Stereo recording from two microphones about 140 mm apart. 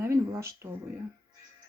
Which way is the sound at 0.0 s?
20° right (ahead or behind).